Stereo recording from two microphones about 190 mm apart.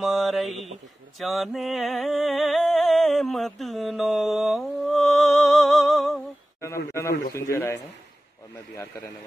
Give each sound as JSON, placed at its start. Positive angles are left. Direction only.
{"t": 0.0, "sound": "speech", "side_deg": 0}
{"t": 1.2, "sound": "a sound", "side_deg": 0}
{"t": 6.9, "sound": "a man's voice", "side_deg": 15}